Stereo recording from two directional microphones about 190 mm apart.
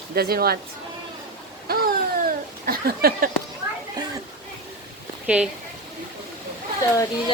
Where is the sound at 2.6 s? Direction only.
55° right (ahead or behind).